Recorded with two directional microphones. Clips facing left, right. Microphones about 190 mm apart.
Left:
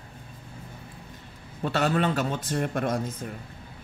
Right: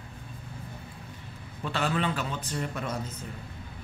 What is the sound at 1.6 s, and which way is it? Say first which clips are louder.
Speech: left 5 dB; 45° left (ahead or behind).